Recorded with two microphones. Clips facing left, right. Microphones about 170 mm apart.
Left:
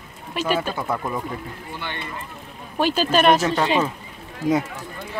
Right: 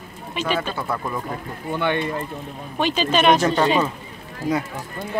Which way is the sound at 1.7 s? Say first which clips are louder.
Right 13 dB; 60° right (ahead or behind).